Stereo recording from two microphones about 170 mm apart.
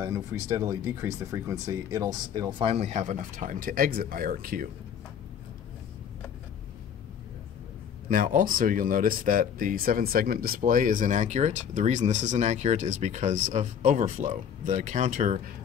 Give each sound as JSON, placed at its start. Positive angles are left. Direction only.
{"t": 0.0, "sound": "speech", "side_deg": -20}
{"t": 8.1, "sound": "speech", "side_deg": -55}